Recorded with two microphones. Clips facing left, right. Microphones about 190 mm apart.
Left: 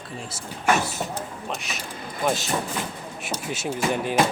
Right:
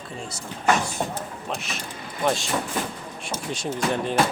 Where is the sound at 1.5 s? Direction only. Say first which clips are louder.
Right 1 dB; centre (ahead or behind).